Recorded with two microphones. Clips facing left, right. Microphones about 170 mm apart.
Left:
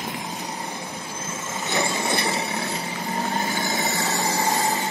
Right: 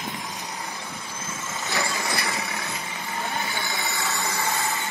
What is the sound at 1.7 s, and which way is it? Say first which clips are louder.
Vehicle: left 4 dB; 20° left (ahead or behind).